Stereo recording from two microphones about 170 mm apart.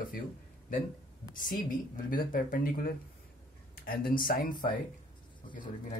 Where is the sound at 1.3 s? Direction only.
50° left (ahead or behind).